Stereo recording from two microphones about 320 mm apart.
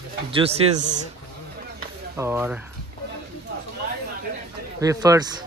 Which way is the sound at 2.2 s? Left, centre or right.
Centre.